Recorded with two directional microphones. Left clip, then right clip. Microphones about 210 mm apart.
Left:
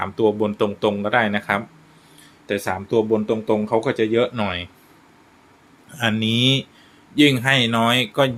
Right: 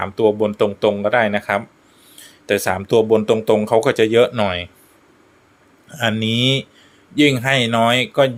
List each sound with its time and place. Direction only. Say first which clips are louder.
0.0 s speech: right 3 dB; 15° right (ahead or behind)
2.5 s speech: right 5 dB; 30° right (ahead or behind)
5.9 s speech: right 2 dB; 20° right (ahead or behind)